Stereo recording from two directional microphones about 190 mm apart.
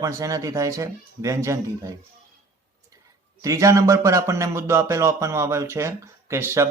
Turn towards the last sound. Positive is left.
turn(degrees=-15)  # may be behind; listen again after turning